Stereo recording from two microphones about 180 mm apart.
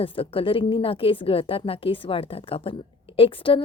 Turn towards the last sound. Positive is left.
turn(degrees=30)  # may be behind; listen again after turning